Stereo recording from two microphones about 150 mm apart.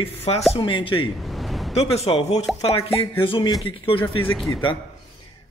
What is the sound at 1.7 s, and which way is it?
Speech, 45° left (ahead or behind).